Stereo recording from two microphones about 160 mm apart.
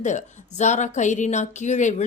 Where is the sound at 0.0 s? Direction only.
50° left (ahead or behind).